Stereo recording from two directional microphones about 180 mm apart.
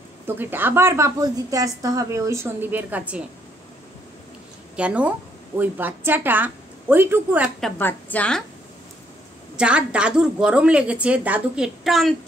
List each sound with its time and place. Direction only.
0.3 s a woman's voice: 10° right (ahead or behind)
4.7 s a woman's voice: 5° right (ahead or behind)
7.6 s a woman's voice: 10° left (ahead or behind)
9.6 s a woman's voice: 5° right (ahead or behind)